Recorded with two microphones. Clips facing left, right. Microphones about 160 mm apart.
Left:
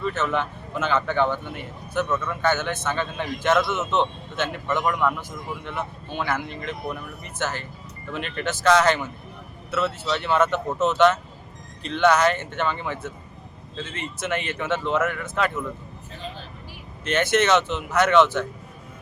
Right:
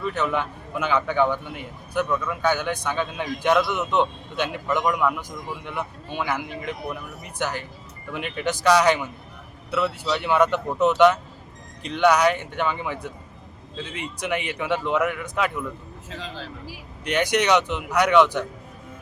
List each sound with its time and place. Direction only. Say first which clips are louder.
0.0 s a man's voice: even; 15° right (ahead or behind)
5.0 s a man's voice: even; centre (ahead or behind)
5.6 s a man's voice: even; 10° right (ahead or behind)
16.0 s speech: right 2 dB; 90° right
17.0 s a man's voice: left 1 dB; 15° right (ahead or behind)